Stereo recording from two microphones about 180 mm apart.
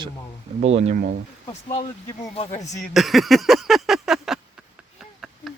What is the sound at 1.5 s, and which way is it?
Speech, 35° left (ahead or behind).